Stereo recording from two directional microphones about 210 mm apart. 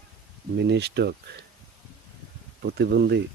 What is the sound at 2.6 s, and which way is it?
Speech, 50° right (ahead or behind).